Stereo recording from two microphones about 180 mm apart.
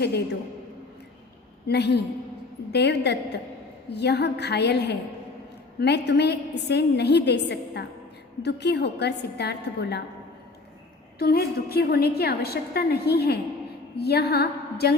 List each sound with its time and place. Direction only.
1.6 s a woman's voice: 65° left (ahead or behind)
11.2 s a woman's voice: 60° left (ahead or behind)
13.9 s a sound: 65° left (ahead or behind)